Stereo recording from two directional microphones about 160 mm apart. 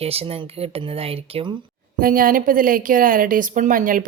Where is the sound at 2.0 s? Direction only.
60° right (ahead or behind).